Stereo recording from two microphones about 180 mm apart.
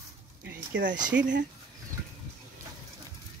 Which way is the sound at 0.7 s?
80° right.